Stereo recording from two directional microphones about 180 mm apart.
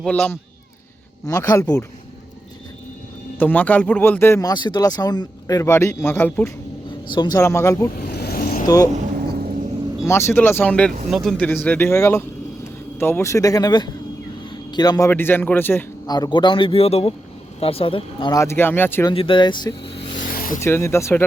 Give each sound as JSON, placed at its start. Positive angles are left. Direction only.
{"t": 0.0, "sound": "speech", "side_deg": 5}
{"t": 1.3, "sound": "a man's voice", "side_deg": 20}
{"t": 3.3, "sound": "speech", "side_deg": 10}
{"t": 7.1, "sound": "speech", "side_deg": 25}
{"t": 7.9, "sound": "vehicle", "side_deg": 60}
{"t": 8.6, "sound": "speech", "side_deg": 20}
{"t": 9.1, "sound": "a sound", "side_deg": -55}
{"t": 10.1, "sound": "a man's voice", "side_deg": 15}
{"t": 19.1, "sound": "a man's voice", "side_deg": 30}
{"t": 20.2, "sound": "rub", "side_deg": 50}
{"t": 20.6, "sound": "speech", "side_deg": 15}